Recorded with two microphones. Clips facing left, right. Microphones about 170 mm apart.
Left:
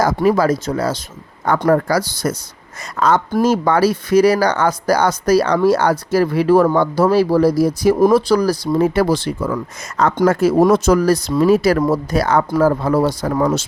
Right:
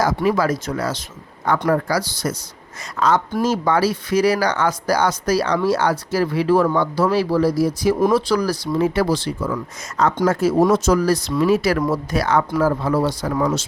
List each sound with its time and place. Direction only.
0.0 s speech: 45° left (ahead or behind)
1.5 s speech: 45° left (ahead or behind)